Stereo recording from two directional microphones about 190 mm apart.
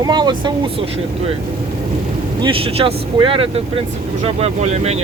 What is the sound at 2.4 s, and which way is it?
Speech, 30° right (ahead or behind).